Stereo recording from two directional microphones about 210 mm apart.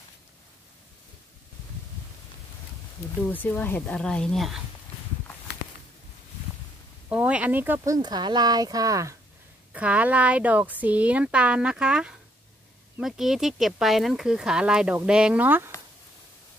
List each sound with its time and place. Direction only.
3.3 s speech: 10° left (ahead or behind)
7.1 s speech: 5° right (ahead or behind)